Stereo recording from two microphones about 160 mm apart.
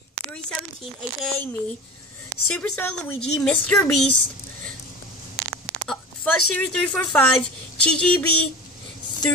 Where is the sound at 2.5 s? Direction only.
5° left (ahead or behind).